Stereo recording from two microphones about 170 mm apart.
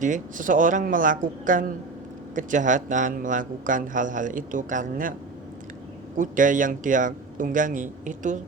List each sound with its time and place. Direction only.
0.0 s a man's voice: 50° right (ahead or behind)
6.1 s a man's voice: 50° right (ahead or behind)